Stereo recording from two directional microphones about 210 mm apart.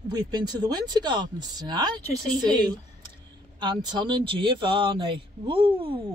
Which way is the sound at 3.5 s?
20° right (ahead or behind).